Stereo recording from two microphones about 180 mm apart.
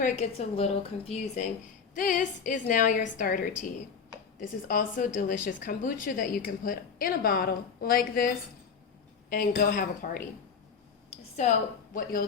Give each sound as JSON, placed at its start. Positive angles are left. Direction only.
{"t": 0.0, "sound": "a woman's voice", "side_deg": 35}
{"t": 2.0, "sound": "a woman's voice", "side_deg": 45}
{"t": 4.7, "sound": "a woman's voice", "side_deg": 45}
{"t": 9.3, "sound": "a woman's voice", "side_deg": 50}